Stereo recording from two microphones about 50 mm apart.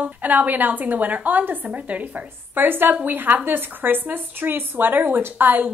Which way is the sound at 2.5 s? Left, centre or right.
Right.